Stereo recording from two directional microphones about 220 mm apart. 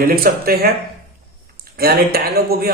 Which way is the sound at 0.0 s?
45° right (ahead or behind).